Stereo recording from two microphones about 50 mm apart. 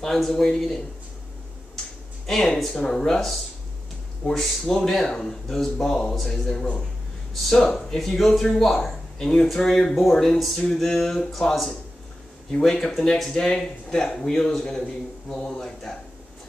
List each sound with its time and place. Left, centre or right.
0.0 s speech: centre
2.2 s a man's voice: centre
7.7 s a man's voice: centre